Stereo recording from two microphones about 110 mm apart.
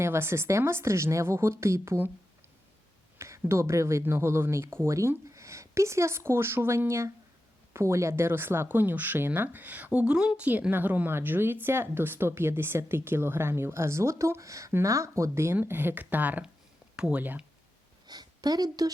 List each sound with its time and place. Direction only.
0.0 s speech: 25° right (ahead or behind)
3.2 s speech: 25° right (ahead or behind)
18.1 s a woman's voice: 40° right (ahead or behind)